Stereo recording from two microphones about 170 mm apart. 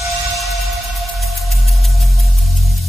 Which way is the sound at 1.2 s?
Centre (ahead or behind).